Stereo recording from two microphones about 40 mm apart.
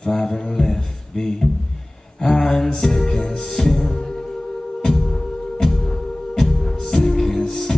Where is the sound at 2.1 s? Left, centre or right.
Centre.